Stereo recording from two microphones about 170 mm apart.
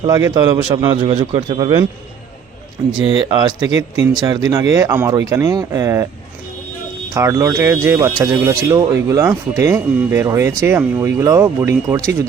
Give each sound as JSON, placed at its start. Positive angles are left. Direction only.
{"t": 0.1, "sound": "speech", "side_deg": -20}
{"t": 3.0, "sound": "speech", "side_deg": 35}
{"t": 4.2, "sound": "speech", "side_deg": -20}
{"t": 7.1, "sound": "speech", "side_deg": -15}